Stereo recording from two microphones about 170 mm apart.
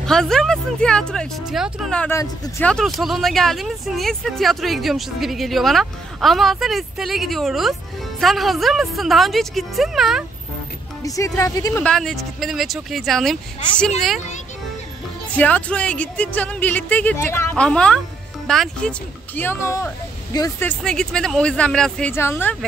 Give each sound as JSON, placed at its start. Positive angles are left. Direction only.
{"t": 0.0, "sound": "speech", "side_deg": 5}
{"t": 11.0, "sound": "speech", "side_deg": 20}
{"t": 11.8, "sound": "speech", "side_deg": 5}
{"t": 15.3, "sound": "speech", "side_deg": 10}
{"t": 20.6, "sound": "speech", "side_deg": 5}